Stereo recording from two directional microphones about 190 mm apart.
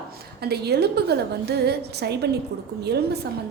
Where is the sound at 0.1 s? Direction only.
55° right (ahead or behind).